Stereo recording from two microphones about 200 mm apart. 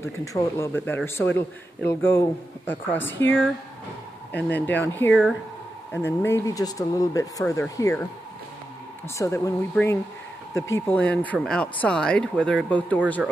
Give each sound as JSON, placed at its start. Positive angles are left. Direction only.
{"t": 0.0, "sound": "a man's voice", "side_deg": 15}
{"t": 9.2, "sound": "a man's voice", "side_deg": 15}